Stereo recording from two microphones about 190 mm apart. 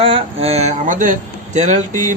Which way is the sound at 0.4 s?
35° right (ahead or behind).